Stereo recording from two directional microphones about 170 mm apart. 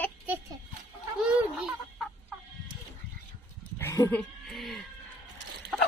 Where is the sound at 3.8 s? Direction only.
15° left (ahead or behind).